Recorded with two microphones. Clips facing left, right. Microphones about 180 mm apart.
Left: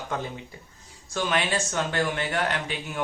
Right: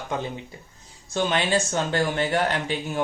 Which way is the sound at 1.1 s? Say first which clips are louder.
Right 3 dB; 30° right (ahead or behind).